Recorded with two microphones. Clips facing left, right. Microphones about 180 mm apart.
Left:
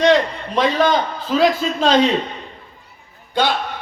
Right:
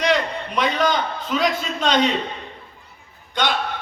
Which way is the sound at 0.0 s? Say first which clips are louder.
Left 6 dB; 30° left (ahead or behind).